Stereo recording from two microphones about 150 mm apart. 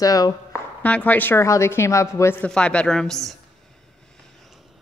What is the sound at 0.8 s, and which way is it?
A man's voice, 10° left (ahead or behind).